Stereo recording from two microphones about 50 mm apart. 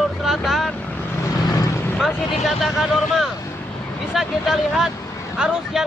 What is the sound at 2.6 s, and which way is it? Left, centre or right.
Speech, centre.